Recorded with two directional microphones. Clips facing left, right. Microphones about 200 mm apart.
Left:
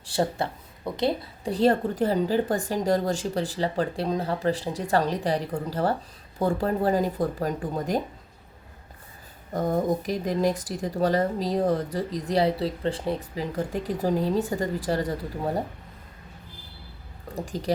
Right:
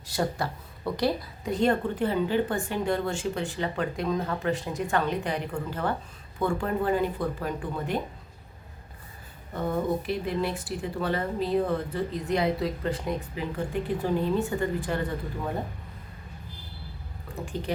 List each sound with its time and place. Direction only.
0.0 s speech: 30° left (ahead or behind)
9.5 s speech: 40° left (ahead or behind)
17.3 s speech: 35° left (ahead or behind)